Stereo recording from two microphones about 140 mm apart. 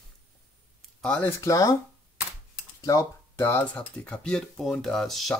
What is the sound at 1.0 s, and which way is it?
Speech, 5° left (ahead or behind).